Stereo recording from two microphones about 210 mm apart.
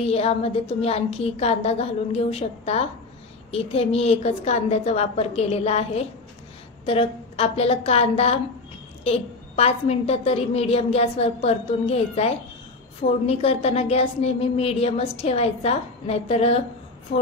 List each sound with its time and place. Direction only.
0.0 s a woman's voice: 30° left (ahead or behind)